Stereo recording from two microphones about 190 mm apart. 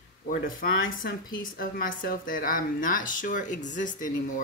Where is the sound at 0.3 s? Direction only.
45° left (ahead or behind).